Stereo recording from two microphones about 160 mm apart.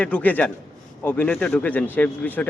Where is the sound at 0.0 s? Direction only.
10° left (ahead or behind).